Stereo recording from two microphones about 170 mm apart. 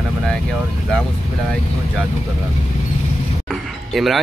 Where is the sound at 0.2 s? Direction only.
5° left (ahead or behind).